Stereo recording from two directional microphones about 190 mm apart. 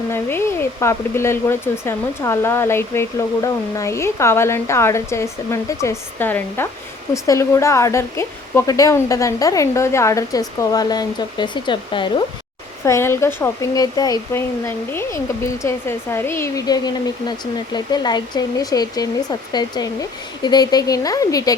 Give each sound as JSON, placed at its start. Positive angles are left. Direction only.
{"t": 0.1, "sound": "speech", "side_deg": 15}
{"t": 12.8, "sound": "speech", "side_deg": 15}